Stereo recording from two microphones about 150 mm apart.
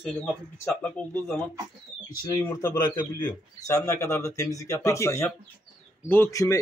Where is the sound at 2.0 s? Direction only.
20° left (ahead or behind).